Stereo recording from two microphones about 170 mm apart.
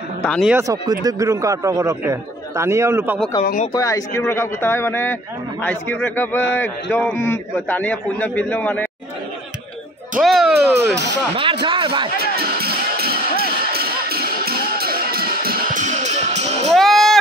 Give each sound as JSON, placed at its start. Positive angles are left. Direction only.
{"t": 0.2, "sound": "speech", "side_deg": 5}
{"t": 0.5, "sound": "a man's voice", "side_deg": -15}
{"t": 3.7, "sound": "a man's voice", "side_deg": 20}
{"t": 10.1, "sound": "speech", "side_deg": 0}
{"t": 10.5, "sound": "speech", "side_deg": -85}
{"t": 11.6, "sound": "a man's voice", "side_deg": -30}
{"t": 12.4, "sound": "music", "side_deg": -65}
{"t": 16.7, "sound": "music", "side_deg": 0}